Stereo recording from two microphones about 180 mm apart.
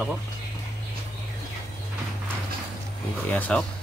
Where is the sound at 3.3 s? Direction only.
10° left (ahead or behind).